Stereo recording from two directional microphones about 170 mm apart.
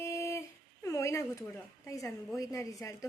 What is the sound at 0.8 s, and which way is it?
A woman's voice, 15° left (ahead or behind).